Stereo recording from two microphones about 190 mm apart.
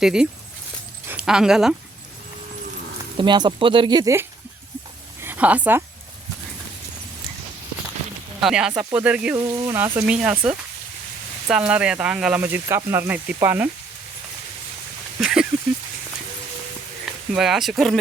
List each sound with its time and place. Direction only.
0.0 s speech: 5° right (ahead or behind)
3.2 s speech: 25° right (ahead or behind)
8.4 s speech: centre (ahead or behind)
15.2 s speech: 5° right (ahead or behind)
17.3 s speech: centre (ahead or behind)